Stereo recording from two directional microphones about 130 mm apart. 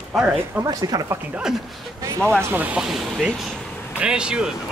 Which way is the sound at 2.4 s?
15° right (ahead or behind).